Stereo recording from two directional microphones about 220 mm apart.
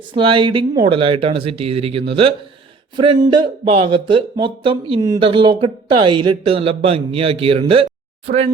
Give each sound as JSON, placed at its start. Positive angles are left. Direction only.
{"t": 0.1, "sound": "speech", "side_deg": -25}